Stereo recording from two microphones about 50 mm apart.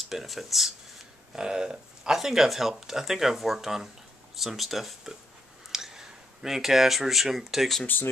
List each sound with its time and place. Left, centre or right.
0.0 s speech: centre
7.8 s speech: left